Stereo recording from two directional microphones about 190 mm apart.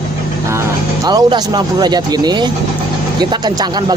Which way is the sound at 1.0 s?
20° right (ahead or behind).